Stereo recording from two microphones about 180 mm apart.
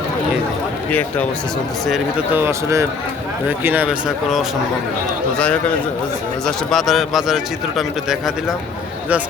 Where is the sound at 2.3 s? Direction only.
15° right (ahead or behind).